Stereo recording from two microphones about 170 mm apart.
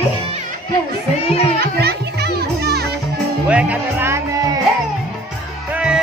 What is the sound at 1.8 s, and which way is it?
Children playing, 70° right (ahead or behind).